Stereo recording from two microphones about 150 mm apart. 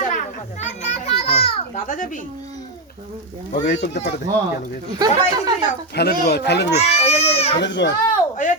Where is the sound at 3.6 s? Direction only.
55° left (ahead or behind).